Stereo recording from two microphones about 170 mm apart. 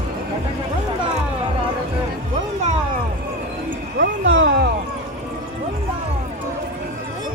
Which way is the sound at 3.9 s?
80° right.